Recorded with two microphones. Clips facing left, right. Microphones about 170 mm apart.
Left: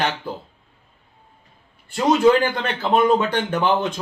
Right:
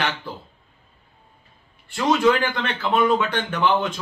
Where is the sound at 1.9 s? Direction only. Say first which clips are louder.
Left 3 dB; 35° left (ahead or behind).